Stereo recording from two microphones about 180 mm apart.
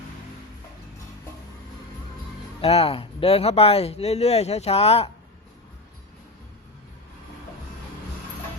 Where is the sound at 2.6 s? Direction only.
35° left (ahead or behind).